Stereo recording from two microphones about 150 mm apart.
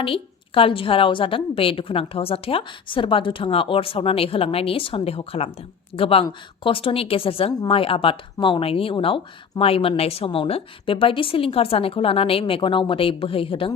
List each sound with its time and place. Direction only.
0.0 s speech: 35° left (ahead or behind)